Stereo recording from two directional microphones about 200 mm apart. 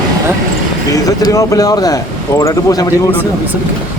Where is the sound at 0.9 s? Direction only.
20° left (ahead or behind).